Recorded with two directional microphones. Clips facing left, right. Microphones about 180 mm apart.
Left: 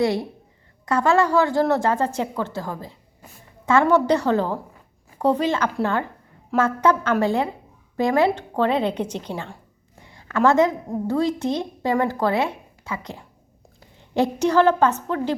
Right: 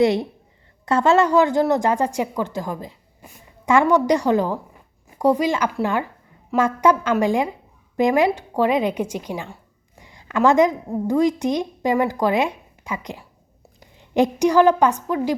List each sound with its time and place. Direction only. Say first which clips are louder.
0.0 s a woman's voice: right 4 dB; 20° right (ahead or behind)